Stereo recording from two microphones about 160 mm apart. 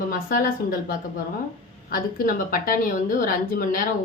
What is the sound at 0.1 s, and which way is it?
Speech, 60° left (ahead or behind).